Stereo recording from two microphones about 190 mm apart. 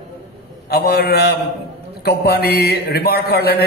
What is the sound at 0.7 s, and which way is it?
A man's voice, 55° left (ahead or behind).